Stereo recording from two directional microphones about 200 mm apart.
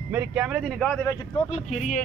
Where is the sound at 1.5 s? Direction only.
35° left (ahead or behind).